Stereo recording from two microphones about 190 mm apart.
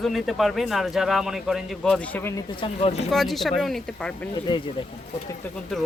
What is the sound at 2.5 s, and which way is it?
Speech, 30° left (ahead or behind).